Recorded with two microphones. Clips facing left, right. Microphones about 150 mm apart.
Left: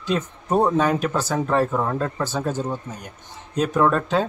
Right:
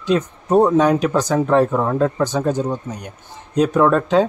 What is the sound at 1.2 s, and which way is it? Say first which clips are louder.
Speech: right 6 dB; 15° right (ahead or behind).